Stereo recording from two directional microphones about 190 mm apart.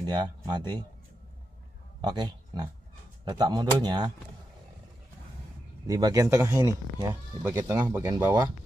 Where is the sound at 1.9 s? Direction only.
25° right (ahead or behind).